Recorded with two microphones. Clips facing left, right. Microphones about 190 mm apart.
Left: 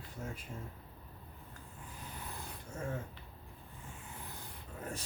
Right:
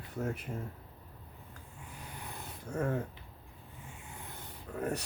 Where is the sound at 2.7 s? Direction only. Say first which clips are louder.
Right 8 dB; 65° right (ahead or behind).